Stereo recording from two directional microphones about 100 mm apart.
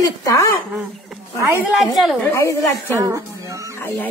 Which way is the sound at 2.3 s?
25° left (ahead or behind).